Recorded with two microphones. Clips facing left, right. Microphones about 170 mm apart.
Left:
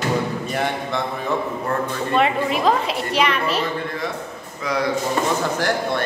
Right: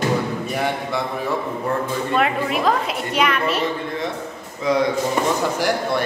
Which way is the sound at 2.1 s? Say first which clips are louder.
Left 2 dB; centre (ahead or behind).